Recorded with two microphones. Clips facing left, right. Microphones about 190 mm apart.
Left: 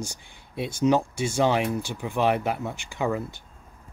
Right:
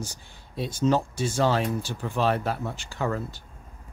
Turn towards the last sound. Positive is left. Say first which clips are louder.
# left 2 dB
turn(degrees=15)  # may be behind; listen again after turning